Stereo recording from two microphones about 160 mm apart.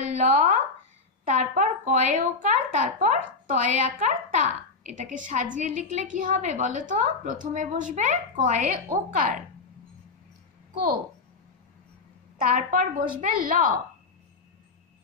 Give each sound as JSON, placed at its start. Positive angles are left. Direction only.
{"t": 0.2, "sound": "a sound", "side_deg": -50}
{"t": 1.2, "sound": "a woman's voice", "side_deg": -50}
{"t": 12.4, "sound": "a woman's voice", "side_deg": -55}